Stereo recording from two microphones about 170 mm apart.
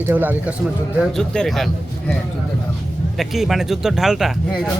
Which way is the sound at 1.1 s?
5° left (ahead or behind).